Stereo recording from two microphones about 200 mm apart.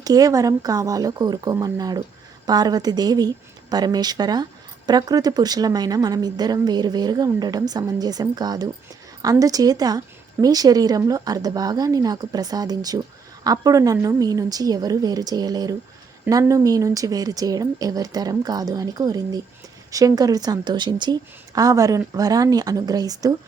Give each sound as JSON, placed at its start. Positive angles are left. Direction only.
{"t": 0.0, "sound": "a woman's voice", "side_deg": -20}